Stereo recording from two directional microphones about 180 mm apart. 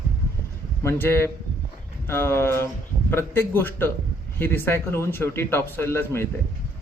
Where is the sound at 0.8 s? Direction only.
15° left (ahead or behind).